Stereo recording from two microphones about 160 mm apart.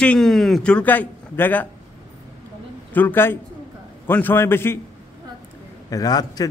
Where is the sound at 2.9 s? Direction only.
10° left (ahead or behind).